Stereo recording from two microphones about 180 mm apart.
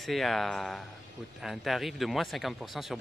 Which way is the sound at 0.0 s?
Centre (ahead or behind).